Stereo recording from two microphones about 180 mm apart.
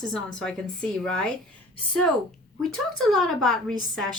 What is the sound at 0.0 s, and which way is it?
Speech, 5° left (ahead or behind).